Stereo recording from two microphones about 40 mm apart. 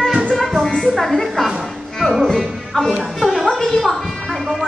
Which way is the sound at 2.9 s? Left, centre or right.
Centre.